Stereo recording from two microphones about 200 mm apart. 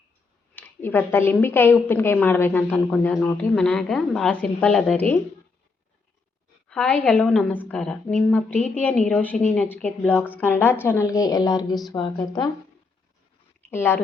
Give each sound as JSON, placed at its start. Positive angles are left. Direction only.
{"t": 0.5, "sound": "a woman's voice", "side_deg": 10}
{"t": 6.7, "sound": "a woman's voice", "side_deg": 5}
{"t": 13.7, "sound": "speech", "side_deg": 10}